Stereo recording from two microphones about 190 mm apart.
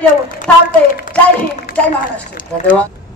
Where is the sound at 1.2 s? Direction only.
5° left (ahead or behind).